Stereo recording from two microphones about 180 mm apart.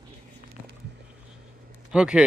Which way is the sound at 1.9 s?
5° right (ahead or behind).